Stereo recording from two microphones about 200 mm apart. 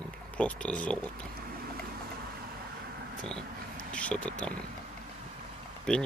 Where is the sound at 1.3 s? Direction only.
50° right (ahead or behind).